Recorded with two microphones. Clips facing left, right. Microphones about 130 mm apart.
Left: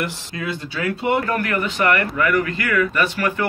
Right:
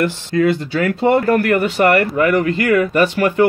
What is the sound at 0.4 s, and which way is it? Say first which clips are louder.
Speech: right 11 dB; 45° right (ahead or behind).